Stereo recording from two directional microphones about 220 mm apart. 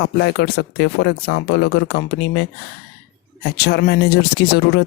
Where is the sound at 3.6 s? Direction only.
50° left (ahead or behind).